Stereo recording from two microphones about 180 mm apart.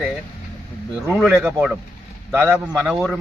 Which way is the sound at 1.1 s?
Centre (ahead or behind).